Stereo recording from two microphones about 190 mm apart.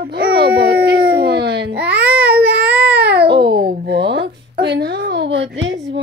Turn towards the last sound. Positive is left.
turn(degrees=-70)  # may be behind; listen again after turning